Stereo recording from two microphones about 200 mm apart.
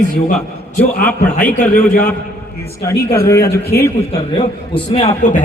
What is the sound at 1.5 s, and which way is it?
Speech, 40° left (ahead or behind).